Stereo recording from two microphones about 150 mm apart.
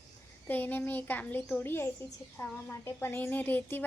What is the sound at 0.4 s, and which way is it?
A woman's voice, 15° left (ahead or behind).